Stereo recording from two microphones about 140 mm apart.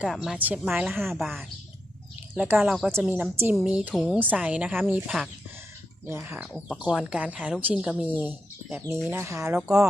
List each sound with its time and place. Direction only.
0.1 s a woman's voice: 5° right (ahead or behind)
2.3 s speech: 10° right (ahead or behind)